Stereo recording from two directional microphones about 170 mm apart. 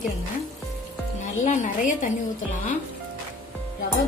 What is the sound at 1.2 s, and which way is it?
Speech, 45° left (ahead or behind).